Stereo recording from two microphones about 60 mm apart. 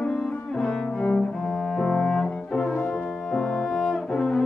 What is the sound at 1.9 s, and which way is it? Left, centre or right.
Brass instrument, centre.